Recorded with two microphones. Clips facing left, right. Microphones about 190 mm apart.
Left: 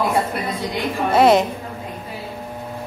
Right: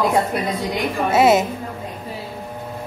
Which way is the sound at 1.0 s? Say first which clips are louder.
Left 1 dB; 5° right (ahead or behind).